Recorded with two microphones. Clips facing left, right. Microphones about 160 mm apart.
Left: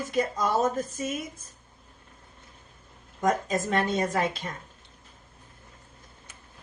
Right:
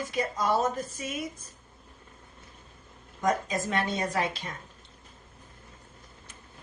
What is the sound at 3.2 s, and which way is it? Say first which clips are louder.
Speech: left 2 dB; 50° left (ahead or behind).